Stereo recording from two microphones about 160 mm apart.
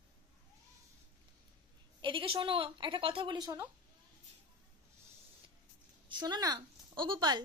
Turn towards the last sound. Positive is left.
turn(degrees=-30)  # may be behind; listen again after turning